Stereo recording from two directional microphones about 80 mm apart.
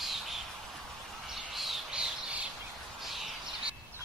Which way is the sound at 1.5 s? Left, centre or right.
Centre.